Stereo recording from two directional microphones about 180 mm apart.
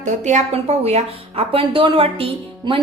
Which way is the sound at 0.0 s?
40° right (ahead or behind).